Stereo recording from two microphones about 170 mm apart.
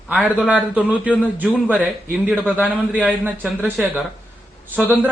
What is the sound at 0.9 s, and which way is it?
Speech, 10° left (ahead or behind).